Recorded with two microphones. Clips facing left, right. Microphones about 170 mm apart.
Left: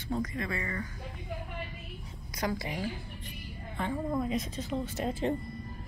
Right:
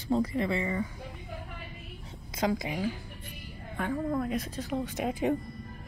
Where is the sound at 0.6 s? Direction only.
10° right (ahead or behind).